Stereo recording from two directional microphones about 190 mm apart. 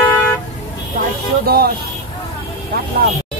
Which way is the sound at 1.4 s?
55° right (ahead or behind).